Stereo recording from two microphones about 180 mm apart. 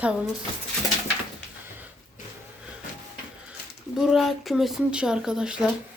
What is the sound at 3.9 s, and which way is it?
Speech, centre (ahead or behind).